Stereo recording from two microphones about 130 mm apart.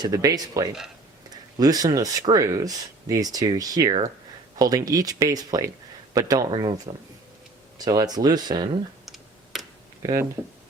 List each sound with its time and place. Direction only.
0.0 s speech: 30° right (ahead or behind)
9.0 s computer keyboard: centre (ahead or behind)